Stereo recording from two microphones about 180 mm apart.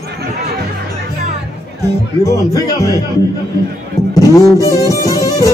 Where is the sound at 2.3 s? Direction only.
20° left (ahead or behind).